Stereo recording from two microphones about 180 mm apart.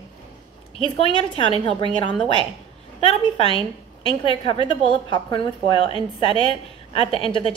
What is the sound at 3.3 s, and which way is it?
A woman's voice, 30° left (ahead or behind).